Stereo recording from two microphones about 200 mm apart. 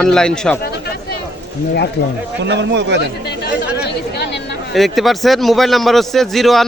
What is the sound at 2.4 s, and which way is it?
Speech, 60° right (ahead or behind).